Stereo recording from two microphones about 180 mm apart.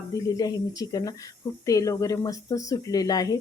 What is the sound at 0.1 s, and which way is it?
A woman's voice, 20° left (ahead or behind).